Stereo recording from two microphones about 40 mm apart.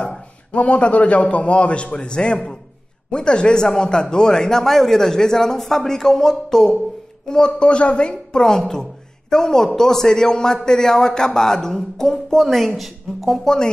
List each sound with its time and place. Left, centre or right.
0.5 s a man's voice: left; by 13.4 s centre
13.4 s speech: centre